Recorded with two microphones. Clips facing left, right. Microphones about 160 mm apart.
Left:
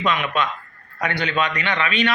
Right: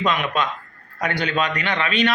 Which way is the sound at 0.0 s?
40° right (ahead or behind).